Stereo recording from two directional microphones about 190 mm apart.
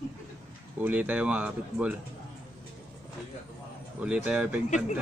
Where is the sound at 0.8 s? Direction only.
10° right (ahead or behind).